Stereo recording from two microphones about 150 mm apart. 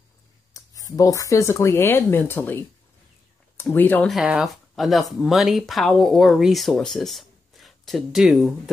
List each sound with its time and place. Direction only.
0.5 s a sound: 20° left (ahead or behind)
0.9 s speech: 20° left (ahead or behind)
3.6 s speech: 10° left (ahead or behind)
4.1 s speech: 5° right (ahead or behind)